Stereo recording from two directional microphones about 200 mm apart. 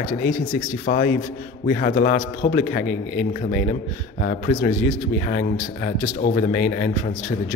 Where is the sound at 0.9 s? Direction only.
50° left (ahead or behind).